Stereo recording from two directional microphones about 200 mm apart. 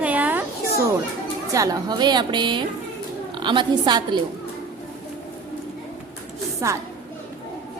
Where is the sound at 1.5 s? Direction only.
15° right (ahead or behind).